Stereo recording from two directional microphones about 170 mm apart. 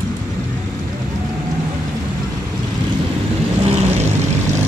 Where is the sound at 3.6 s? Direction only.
40° right (ahead or behind).